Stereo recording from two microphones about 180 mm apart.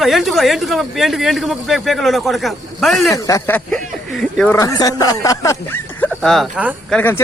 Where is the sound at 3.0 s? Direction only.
20° left (ahead or behind).